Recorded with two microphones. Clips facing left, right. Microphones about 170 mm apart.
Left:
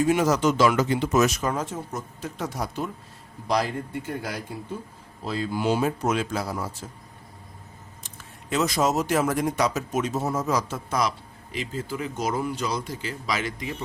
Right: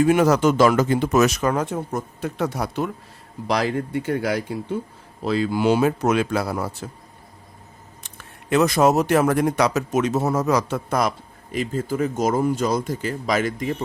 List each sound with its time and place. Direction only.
0.0 s a man's voice: 60° right (ahead or behind)
8.0 s speech: 60° right (ahead or behind)